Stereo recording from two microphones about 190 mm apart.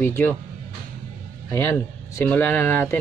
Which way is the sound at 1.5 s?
15° left (ahead or behind).